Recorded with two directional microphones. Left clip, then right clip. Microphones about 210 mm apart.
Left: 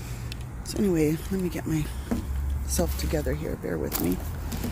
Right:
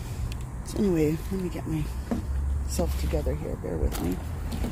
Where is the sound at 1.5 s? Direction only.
15° left (ahead or behind).